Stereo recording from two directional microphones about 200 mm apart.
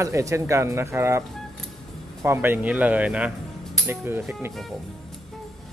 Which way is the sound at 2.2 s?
10° right (ahead or behind).